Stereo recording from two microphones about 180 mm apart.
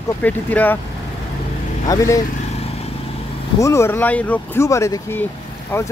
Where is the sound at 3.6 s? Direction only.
15° left (ahead or behind).